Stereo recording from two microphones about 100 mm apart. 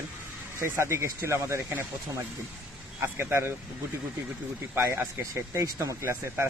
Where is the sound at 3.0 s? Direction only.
25° right (ahead or behind).